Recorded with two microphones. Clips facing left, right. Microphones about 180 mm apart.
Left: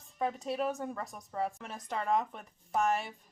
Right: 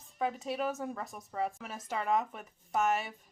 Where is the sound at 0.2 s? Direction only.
Centre (ahead or behind).